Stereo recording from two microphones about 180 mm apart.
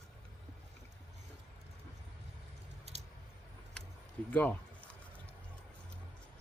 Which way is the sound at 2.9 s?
35° right (ahead or behind).